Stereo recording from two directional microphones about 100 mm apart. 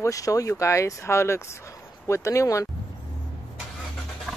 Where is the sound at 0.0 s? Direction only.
35° left (ahead or behind).